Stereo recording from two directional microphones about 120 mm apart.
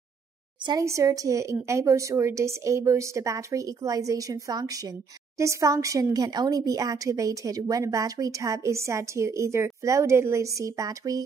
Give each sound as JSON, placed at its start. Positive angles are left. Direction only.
{"t": 0.7, "sound": "speech", "side_deg": -25}